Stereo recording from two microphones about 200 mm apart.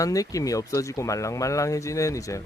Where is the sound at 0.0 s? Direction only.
15° left (ahead or behind).